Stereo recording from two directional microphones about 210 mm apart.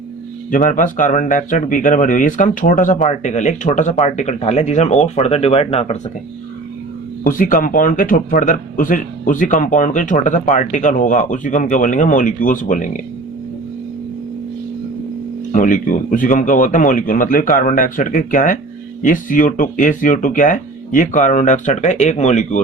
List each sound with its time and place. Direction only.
0.5 s speech: 40° left (ahead or behind)
7.3 s speech: 40° left (ahead or behind)
15.5 s speech: 40° left (ahead or behind)